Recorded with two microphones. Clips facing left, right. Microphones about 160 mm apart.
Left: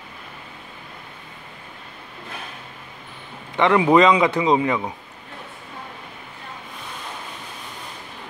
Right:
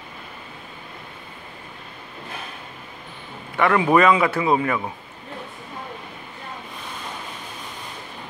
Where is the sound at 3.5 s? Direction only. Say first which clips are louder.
Left 2 dB; 20° left (ahead or behind).